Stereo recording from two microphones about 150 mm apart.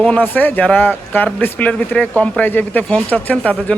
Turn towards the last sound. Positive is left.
turn(degrees=10)  # may be behind; listen again after turning